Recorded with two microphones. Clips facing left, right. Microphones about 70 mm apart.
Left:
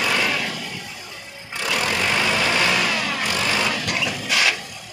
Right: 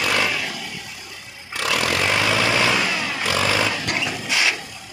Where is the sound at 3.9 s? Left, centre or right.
Centre.